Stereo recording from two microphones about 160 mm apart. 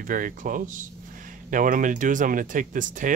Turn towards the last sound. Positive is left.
turn(degrees=-55)  # may be behind; listen again after turning